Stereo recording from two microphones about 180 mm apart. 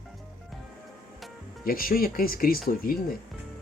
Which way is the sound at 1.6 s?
55° left (ahead or behind).